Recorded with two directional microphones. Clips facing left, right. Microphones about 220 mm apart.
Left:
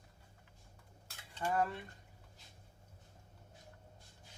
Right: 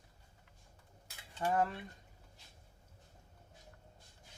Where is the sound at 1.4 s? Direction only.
20° right (ahead or behind).